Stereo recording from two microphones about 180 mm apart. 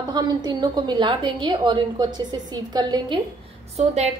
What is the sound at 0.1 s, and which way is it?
A woman's voice, 25° right (ahead or behind).